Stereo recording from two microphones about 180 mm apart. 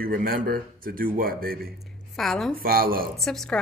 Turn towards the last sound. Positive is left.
turn(degrees=0)  # may be behind; listen again after turning